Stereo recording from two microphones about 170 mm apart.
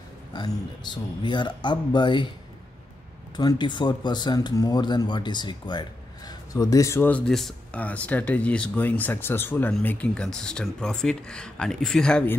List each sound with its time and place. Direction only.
0.3 s speech: 25° left (ahead or behind)
3.3 s speech: 25° left (ahead or behind); by 12.4 s 5° left (ahead or behind)